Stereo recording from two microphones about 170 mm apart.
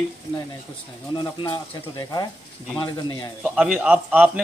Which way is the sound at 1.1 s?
25° left (ahead or behind).